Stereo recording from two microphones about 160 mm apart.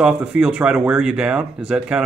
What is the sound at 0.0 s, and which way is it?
Speech, 5° right (ahead or behind).